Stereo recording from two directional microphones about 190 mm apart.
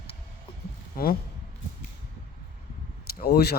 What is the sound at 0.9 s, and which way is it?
Speech, 50° left (ahead or behind).